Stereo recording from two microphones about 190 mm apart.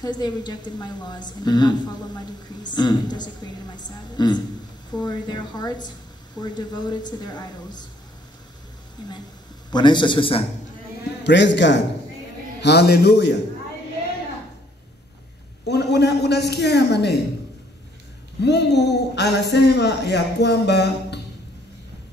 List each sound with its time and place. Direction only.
0.0 s a woman's voice: 20° left (ahead or behind)
9.7 s a woman's voice: 25° left (ahead or behind)
11.2 s a man's voice: 70° left (ahead or behind)
15.6 s a man's voice: 60° left (ahead or behind)
18.4 s a man's voice: 65° left (ahead or behind)